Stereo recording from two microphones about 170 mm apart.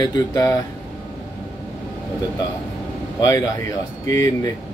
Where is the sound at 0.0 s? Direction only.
20° left (ahead or behind).